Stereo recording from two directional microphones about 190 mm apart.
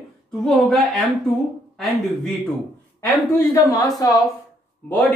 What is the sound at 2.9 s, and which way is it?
Speech, 15° left (ahead or behind).